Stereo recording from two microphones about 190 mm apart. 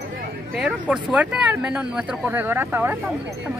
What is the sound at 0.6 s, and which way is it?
Speech, 5° right (ahead or behind).